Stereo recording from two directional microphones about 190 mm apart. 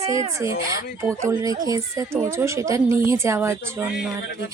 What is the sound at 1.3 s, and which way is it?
Speech, 15° right (ahead or behind).